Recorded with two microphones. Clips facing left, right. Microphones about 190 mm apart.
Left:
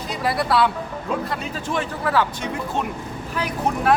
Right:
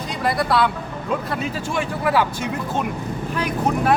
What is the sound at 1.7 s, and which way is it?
Speech, 10° right (ahead or behind).